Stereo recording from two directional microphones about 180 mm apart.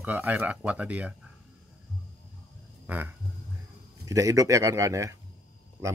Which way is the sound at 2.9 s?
10° right (ahead or behind).